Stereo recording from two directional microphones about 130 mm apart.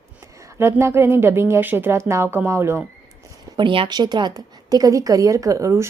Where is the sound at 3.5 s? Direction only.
40° right (ahead or behind).